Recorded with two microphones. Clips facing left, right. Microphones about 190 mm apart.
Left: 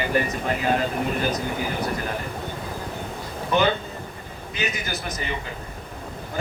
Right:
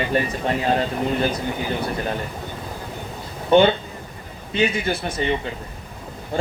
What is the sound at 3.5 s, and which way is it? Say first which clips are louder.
A man's voice: right 7 dB; 30° right (ahead or behind).